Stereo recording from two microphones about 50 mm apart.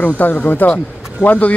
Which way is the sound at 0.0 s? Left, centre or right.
Left.